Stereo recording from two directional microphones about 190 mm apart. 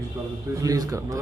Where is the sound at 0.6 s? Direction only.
20° right (ahead or behind).